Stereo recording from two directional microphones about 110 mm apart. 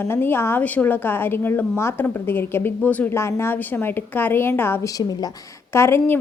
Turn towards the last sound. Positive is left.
turn(degrees=25)  # may be behind; listen again after turning